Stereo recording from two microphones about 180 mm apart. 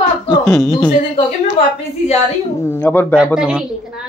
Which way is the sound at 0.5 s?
15° left (ahead or behind).